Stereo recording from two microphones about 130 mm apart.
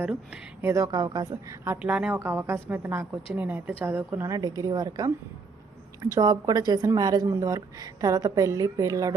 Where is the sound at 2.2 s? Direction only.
20° right (ahead or behind).